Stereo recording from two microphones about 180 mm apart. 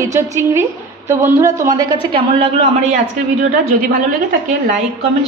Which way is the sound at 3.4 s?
50° right (ahead or behind).